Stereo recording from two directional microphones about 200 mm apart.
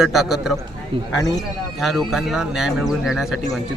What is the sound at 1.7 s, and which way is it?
Speech, centre (ahead or behind).